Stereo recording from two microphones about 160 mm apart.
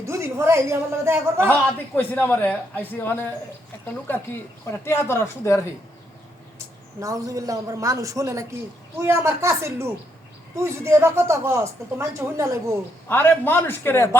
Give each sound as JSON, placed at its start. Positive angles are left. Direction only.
{"t": 0.0, "sound": "speech", "side_deg": -15}
{"t": 2.0, "sound": "a man's voice", "side_deg": 10}
{"t": 7.0, "sound": "a man's voice", "side_deg": -20}
{"t": 13.1, "sound": "a man's voice", "side_deg": 10}